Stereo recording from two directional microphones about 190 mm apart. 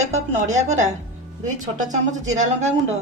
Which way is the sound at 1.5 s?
40° right (ahead or behind).